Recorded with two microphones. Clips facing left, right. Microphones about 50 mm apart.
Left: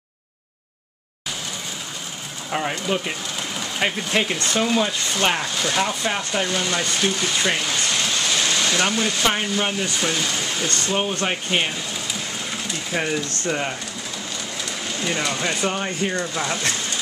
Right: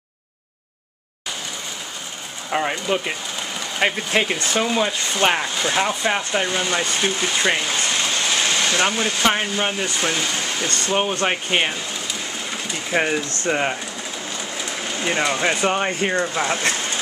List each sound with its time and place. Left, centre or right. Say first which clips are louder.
2.5 s speech: right 2 dB; centre
12.9 s speech: right 4 dB; right